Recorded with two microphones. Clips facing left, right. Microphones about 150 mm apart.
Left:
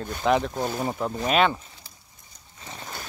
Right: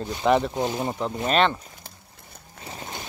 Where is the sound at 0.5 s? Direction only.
15° right (ahead or behind).